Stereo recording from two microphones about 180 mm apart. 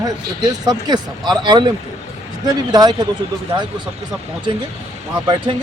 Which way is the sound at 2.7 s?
20° right (ahead or behind).